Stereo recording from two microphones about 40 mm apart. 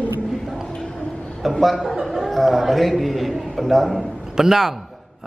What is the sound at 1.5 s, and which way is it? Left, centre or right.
A man's voice, centre.